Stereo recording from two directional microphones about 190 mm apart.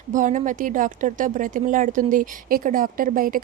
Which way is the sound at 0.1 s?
40° right (ahead or behind).